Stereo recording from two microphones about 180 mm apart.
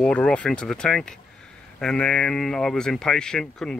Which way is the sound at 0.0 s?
5° left (ahead or behind).